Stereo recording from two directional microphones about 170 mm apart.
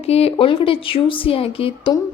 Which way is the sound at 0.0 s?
35° left (ahead or behind).